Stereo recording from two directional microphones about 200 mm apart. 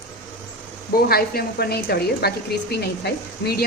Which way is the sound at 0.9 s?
50° left (ahead or behind).